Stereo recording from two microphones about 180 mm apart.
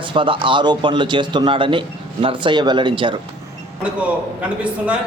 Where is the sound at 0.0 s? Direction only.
25° right (ahead or behind).